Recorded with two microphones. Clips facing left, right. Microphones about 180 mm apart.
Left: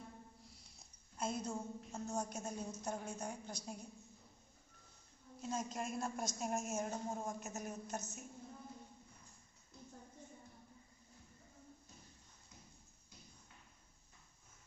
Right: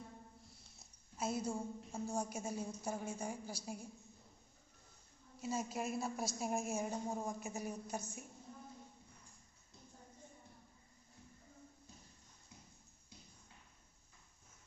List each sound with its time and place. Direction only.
0.4 s a woman's voice: centre (ahead or behind)
5.4 s a woman's voice: 5° right (ahead or behind)